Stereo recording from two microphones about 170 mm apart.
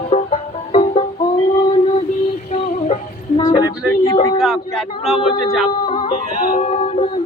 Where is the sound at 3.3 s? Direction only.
30° left (ahead or behind).